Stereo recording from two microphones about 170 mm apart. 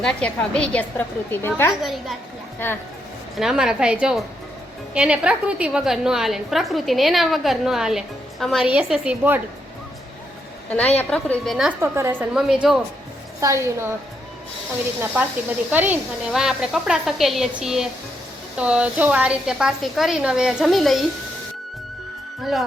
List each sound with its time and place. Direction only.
0.0 s a woman's voice: 5° left (ahead or behind)
1.8 s a woman's voice: centre (ahead or behind)
2.6 s a woman's voice: 10° left (ahead or behind)
3.3 s a woman's voice: 5° right (ahead or behind)
11.1 s a woman's voice: 5° left (ahead or behind)
11.8 s a woman's voice: 15° right (ahead or behind)
12.3 s a woman's voice: 5° right (ahead or behind)
13.4 s a woman's voice: 15° right (ahead or behind)
15.1 s a woman's voice: 10° right (ahead or behind)
22.4 s speech: centre (ahead or behind)